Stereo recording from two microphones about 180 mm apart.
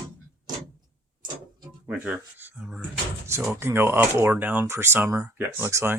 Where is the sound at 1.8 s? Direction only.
5° right (ahead or behind).